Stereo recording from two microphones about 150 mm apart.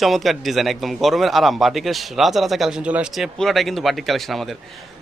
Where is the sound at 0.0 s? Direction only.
Centre (ahead or behind).